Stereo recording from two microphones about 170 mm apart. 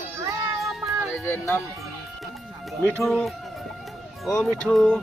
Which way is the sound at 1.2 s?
15° left (ahead or behind).